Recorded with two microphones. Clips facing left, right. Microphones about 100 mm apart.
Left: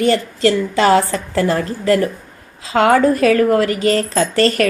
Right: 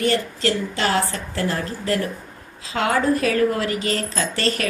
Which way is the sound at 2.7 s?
90° left.